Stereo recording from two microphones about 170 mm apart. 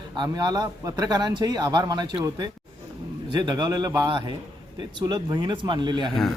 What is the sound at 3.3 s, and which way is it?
Speech, 25° right (ahead or behind).